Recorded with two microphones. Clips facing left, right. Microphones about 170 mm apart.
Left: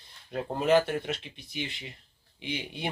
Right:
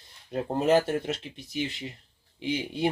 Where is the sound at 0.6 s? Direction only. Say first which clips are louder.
Right 1 dB; 40° right (ahead or behind).